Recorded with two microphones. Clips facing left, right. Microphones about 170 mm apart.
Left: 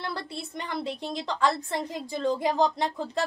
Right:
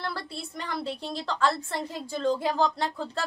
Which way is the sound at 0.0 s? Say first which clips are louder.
Even; 20° left (ahead or behind).